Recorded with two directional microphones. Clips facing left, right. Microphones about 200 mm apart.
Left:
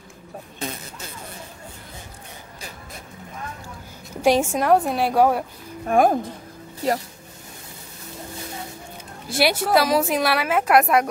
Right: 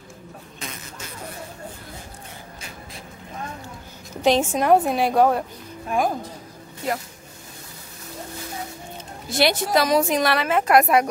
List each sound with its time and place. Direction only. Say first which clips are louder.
4.2 s a woman's voice: left 1 dB; 10° left (ahead or behind)
5.9 s speech: left 5 dB; 55° left (ahead or behind)
6.8 s speech: left 4 dB; 35° left (ahead or behind)
9.3 s a woman's voice: left 1 dB; 10° left (ahead or behind)